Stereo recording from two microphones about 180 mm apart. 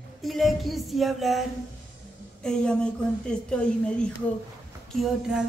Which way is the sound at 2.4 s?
5° left (ahead or behind).